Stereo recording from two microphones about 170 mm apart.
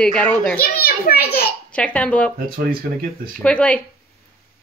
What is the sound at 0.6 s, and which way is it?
Speech, 60° left (ahead or behind).